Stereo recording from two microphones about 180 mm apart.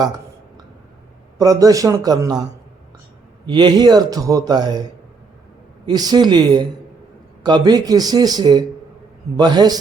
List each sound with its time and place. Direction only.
1.4 s speech: 20° right (ahead or behind)
5.8 s speech: 20° right (ahead or behind)